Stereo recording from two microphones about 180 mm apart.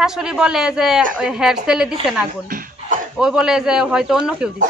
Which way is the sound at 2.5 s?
50° right (ahead or behind).